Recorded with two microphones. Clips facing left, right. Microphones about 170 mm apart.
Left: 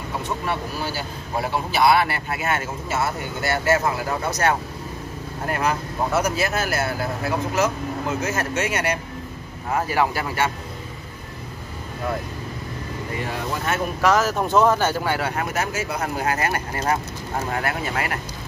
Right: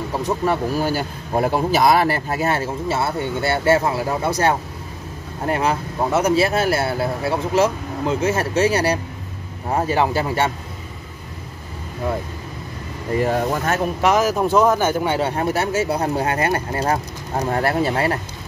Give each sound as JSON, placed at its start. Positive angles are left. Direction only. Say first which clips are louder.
{"t": 0.2, "sound": "speech", "louder": "right 8 dB", "side_deg": -45}
{"t": 13.1, "sound": "speech", "louder": "right 10 dB", "side_deg": -45}
{"t": 14.0, "sound": "speech", "louder": "right 2 dB", "side_deg": -15}
{"t": 14.3, "sound": "speech", "louder": "right 2 dB", "side_deg": -5}
{"t": 15.0, "sound": "speech", "louder": "right 4 dB", "side_deg": -25}